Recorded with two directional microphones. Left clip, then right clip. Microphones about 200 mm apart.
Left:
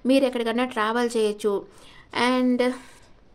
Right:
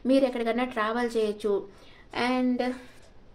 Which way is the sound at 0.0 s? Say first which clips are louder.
Left 3 dB; 35° left (ahead or behind).